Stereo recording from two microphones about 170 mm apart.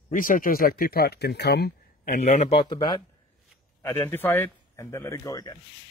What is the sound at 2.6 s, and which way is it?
Speech, 25° left (ahead or behind).